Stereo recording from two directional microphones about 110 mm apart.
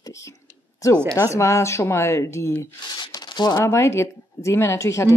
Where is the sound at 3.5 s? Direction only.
25° left (ahead or behind).